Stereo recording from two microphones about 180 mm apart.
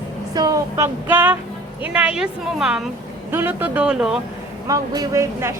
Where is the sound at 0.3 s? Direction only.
20° right (ahead or behind); by 4.2 s 5° right (ahead or behind).